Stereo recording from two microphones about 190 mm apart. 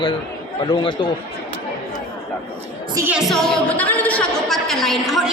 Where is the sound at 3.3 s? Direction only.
5° left (ahead or behind).